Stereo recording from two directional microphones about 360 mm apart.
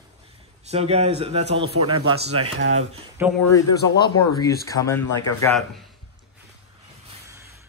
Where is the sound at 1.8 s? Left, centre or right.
Right.